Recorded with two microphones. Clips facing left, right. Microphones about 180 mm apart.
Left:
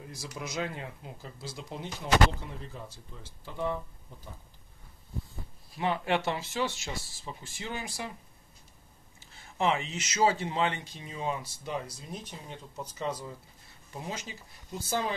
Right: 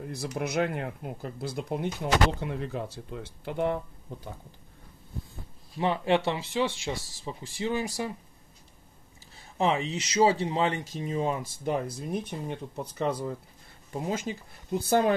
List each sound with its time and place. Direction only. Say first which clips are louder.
0.0 s a sound: right 8 dB; 60° right (ahead or behind)
0.4 s speech: right 7 dB; 60° right (ahead or behind)
5.8 s speech: right 4 dB; 30° right (ahead or behind)
9.6 s speech: right 3 dB; 30° right (ahead or behind); by 15.1 s 60° right (ahead or behind)